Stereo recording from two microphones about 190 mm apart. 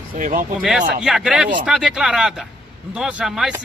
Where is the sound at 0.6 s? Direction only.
5° right (ahead or behind).